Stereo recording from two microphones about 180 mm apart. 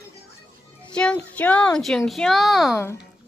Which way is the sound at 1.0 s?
5° left (ahead or behind).